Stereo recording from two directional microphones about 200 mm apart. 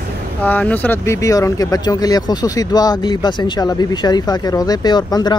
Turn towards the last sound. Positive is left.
turn(degrees=20)  # may be behind; listen again after turning